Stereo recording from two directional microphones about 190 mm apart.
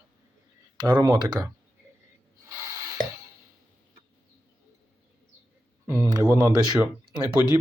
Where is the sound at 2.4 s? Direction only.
15° right (ahead or behind).